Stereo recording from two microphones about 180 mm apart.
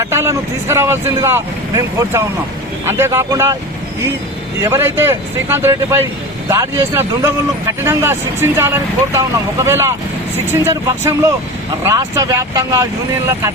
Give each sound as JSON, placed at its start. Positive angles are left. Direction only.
{"t": 0.0, "sound": "speech", "side_deg": -15}
{"t": 4.6, "sound": "speech", "side_deg": -15}